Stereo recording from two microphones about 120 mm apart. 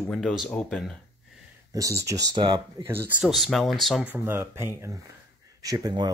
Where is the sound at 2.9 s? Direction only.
20° right (ahead or behind).